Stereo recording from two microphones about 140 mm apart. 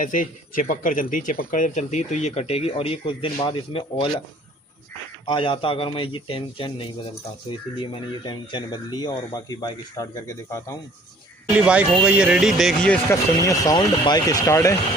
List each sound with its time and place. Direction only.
0.0 s speech: 70° left (ahead or behind); by 4.2 s 40° left (ahead or behind)
5.2 s speech: 35° left (ahead or behind)
11.5 s speech: 10° right (ahead or behind)
12.9 s speech: 20° left (ahead or behind)